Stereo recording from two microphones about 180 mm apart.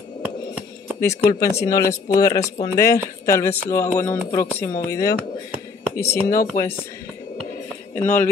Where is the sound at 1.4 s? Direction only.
15° left (ahead or behind).